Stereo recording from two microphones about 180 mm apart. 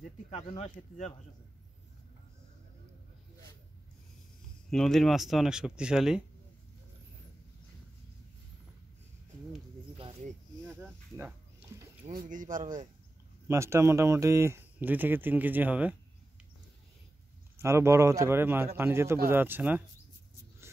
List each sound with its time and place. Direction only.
0.3 s speech: 35° left (ahead or behind)
4.6 s speech: centre (ahead or behind)
9.9 s a sound: 30° right (ahead or behind)
10.8 s a sound: 10° right (ahead or behind)
12.1 s speech: 50° right (ahead or behind)
13.5 s speech: 15° right (ahead or behind)
17.6 s speech: 15° right (ahead or behind)